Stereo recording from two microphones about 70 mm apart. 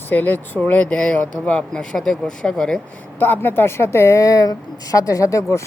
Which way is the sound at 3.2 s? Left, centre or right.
Left.